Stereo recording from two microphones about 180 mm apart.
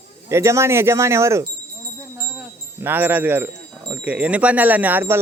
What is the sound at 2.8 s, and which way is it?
Speech, 10° right (ahead or behind).